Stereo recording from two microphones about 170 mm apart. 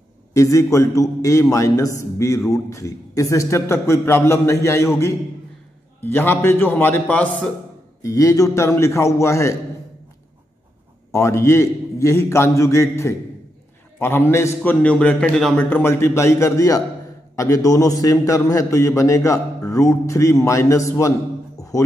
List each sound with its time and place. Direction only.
0.3 s a man's voice: 20° left (ahead or behind)
8.0 s a man's voice: 20° left (ahead or behind)
11.1 s a man's voice: 15° left (ahead or behind)
21.5 s music: 20° left (ahead or behind)